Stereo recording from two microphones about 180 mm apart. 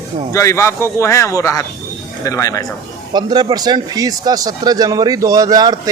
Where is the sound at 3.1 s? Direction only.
25° right (ahead or behind).